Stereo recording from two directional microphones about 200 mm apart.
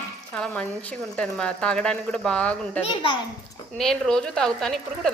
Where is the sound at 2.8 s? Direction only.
25° left (ahead or behind).